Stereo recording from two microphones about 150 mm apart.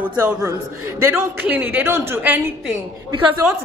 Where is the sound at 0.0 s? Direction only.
15° right (ahead or behind).